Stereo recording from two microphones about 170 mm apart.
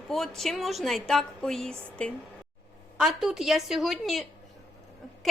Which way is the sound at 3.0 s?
5° right (ahead or behind).